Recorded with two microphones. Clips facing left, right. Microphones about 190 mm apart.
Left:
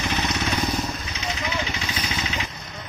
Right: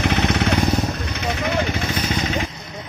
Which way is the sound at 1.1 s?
60° right (ahead or behind).